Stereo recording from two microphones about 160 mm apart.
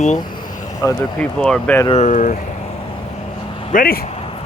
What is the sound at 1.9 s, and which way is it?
Speech, 45° left (ahead or behind).